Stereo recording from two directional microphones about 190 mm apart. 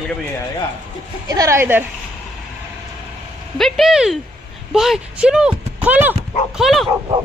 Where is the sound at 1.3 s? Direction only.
15° right (ahead or behind).